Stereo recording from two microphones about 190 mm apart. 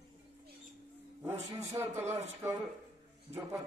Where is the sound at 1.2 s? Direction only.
10° right (ahead or behind).